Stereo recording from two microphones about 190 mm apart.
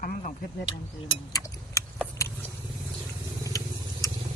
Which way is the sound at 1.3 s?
15° left (ahead or behind).